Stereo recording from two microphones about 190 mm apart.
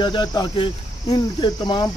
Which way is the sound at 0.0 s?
25° left (ahead or behind).